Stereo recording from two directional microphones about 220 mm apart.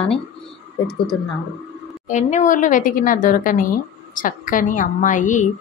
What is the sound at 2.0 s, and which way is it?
A woman's voice, 35° left (ahead or behind).